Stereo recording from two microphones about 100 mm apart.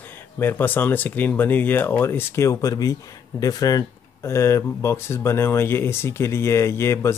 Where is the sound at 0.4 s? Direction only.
20° left (ahead or behind).